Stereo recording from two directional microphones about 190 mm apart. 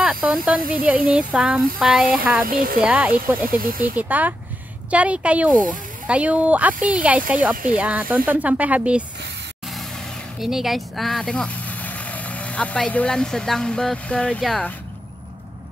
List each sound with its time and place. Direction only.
0.0 s hiss: 5° right (ahead or behind)
0.7 s speech: 5° right (ahead or behind)
2.4 s speech: 50° right (ahead or behind)
2.8 s speech: 5° right (ahead or behind)
3.4 s speech: 50° right (ahead or behind)
3.8 s speech: 10° right (ahead or behind)
10.4 s speech: centre (ahead or behind)